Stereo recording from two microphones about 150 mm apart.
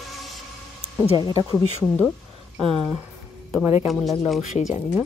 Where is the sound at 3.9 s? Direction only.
Centre (ahead or behind).